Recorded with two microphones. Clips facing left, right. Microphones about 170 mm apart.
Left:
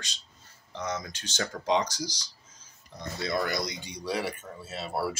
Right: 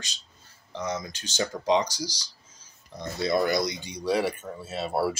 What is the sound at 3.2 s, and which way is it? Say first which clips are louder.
Speech: right 6 dB; 20° right (ahead or behind).